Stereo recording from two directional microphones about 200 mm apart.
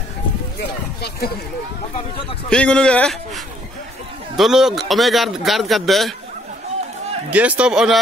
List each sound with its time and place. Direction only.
0.6 s a sound: 50° left (ahead or behind)
2.5 s a man's voice: 5° left (ahead or behind)
4.4 s a man's voice: centre (ahead or behind)
7.2 s a man's voice: 5° right (ahead or behind)